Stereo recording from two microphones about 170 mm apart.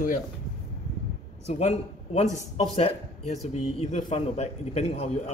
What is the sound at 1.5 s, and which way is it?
A man's voice, 40° left (ahead or behind).